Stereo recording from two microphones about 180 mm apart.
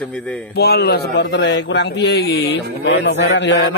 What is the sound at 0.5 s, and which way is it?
Speech, 60° left (ahead or behind).